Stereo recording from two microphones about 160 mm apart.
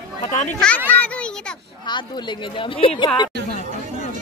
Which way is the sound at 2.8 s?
35° left (ahead or behind).